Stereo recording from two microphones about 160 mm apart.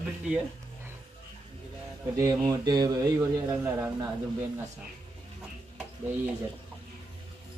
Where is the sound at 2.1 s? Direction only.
20° right (ahead or behind).